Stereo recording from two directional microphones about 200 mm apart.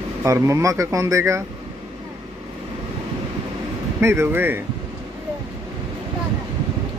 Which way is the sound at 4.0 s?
10° right (ahead or behind).